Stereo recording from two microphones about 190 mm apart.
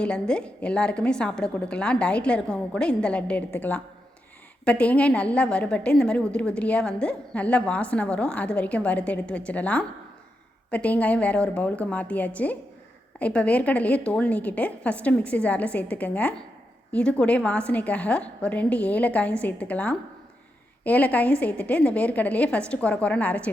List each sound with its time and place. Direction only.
0.0 s a woman's voice: 5° left (ahead or behind)